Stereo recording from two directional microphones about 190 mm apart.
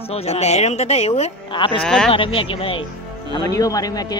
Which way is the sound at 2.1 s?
30° left (ahead or behind).